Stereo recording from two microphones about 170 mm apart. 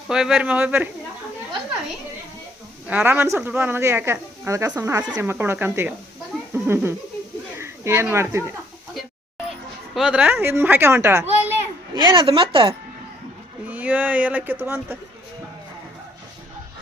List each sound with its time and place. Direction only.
0.1 s speech: 5° right (ahead or behind)
2.8 s speech: 10° right (ahead or behind)
9.9 s speech: 5° right (ahead or behind)
11.9 s speech: 25° right (ahead or behind)
13.7 s speech: 10° right (ahead or behind)